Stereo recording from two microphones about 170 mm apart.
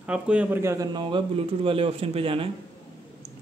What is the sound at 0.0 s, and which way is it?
A man's voice, 5° right (ahead or behind).